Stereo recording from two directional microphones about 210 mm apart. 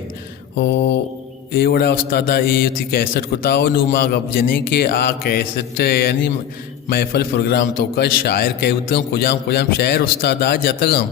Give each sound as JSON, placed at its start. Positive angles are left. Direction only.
{"t": 0.5, "sound": "mantra", "side_deg": 55}
{"t": 1.5, "sound": "a man's voice", "side_deg": 45}